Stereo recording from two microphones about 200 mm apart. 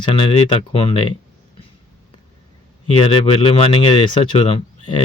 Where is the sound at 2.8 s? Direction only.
25° left (ahead or behind).